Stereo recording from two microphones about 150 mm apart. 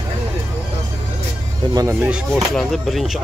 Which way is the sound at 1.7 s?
25° right (ahead or behind).